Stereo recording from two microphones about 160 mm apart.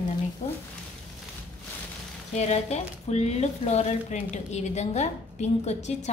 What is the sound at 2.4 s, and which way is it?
Speech, 45° left (ahead or behind).